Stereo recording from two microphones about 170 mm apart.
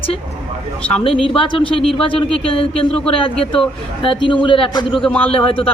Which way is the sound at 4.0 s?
30° left (ahead or behind).